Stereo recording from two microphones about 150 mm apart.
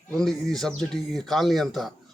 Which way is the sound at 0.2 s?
Centre (ahead or behind).